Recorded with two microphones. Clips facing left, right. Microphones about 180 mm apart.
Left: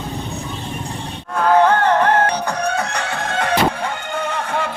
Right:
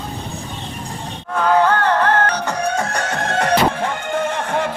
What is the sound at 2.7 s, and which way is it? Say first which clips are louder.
Fowl: right 1 dB; 45° right (ahead or behind).